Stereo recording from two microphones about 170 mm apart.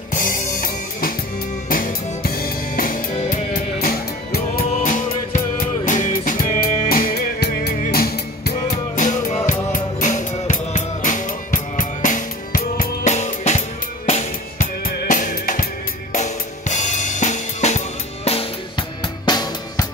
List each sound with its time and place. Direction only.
0.1 s drum kit: 55° left (ahead or behind)
1.7 s music: 55° left (ahead or behind); by 7.7 s 70° left (ahead or behind)
7.7 s music: 60° left (ahead or behind)
8.9 s music: 50° left (ahead or behind)
13.1 s drum kit: 45° left (ahead or behind)
14.8 s drum: 50° left (ahead or behind)
16.1 s drum kit: 45° left (ahead or behind); by 19.9 s 25° left (ahead or behind)